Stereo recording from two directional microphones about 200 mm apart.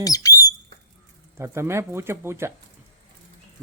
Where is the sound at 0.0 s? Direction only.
15° left (ahead or behind).